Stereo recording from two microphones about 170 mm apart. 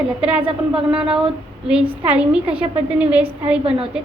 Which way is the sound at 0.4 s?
30° right (ahead or behind).